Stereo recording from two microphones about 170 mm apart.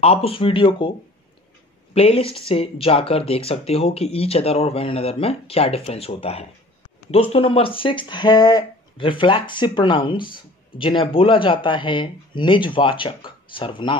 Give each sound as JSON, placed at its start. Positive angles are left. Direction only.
{"t": 0.0, "sound": "speech", "side_deg": 35}
{"t": 2.0, "sound": "speech", "side_deg": 35}